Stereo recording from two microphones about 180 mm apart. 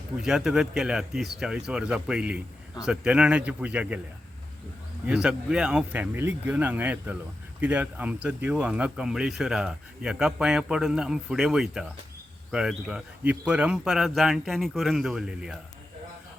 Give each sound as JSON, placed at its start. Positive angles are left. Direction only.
{"t": 0.2, "sound": "speech", "side_deg": 0}
{"t": 5.0, "sound": "speech", "side_deg": -5}